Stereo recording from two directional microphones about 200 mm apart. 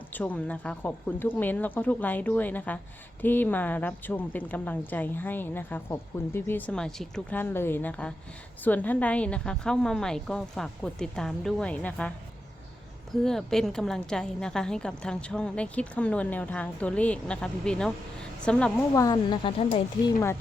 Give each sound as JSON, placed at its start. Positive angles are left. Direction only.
{"t": 0.1, "sound": "a woman's voice", "side_deg": 10}
{"t": 13.2, "sound": "a woman's voice", "side_deg": 0}
{"t": 18.9, "sound": "speech", "side_deg": 20}